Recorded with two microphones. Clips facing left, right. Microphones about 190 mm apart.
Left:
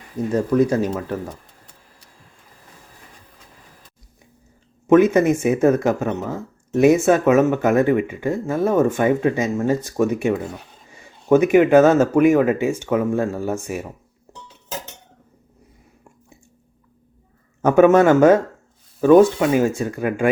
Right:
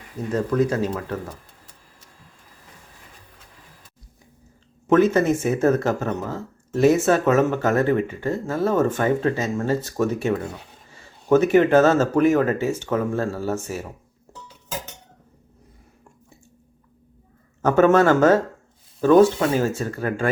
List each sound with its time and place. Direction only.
0.3 s speech: 10° left (ahead or behind)
4.9 s speech: 15° left (ahead or behind)
17.6 s speech: 15° left (ahead or behind)